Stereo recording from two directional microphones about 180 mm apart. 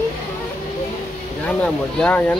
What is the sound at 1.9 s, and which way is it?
Speech, 10° left (ahead or behind).